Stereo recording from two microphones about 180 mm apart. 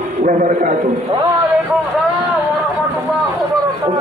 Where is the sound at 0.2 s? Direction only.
45° right (ahead or behind).